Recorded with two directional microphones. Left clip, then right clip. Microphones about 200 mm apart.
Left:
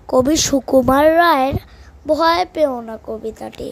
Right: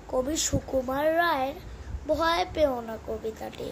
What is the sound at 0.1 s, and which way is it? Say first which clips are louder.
A child's voice: left 13 dB; 45° left (ahead or behind).